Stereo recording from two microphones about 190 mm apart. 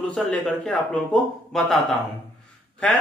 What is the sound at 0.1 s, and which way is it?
Speech, 5° left (ahead or behind).